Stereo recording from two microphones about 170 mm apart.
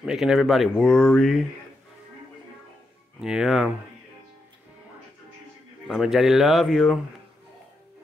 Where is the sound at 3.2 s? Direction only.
5° right (ahead or behind).